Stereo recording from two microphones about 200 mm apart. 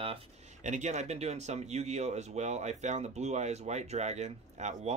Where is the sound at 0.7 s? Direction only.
35° right (ahead or behind).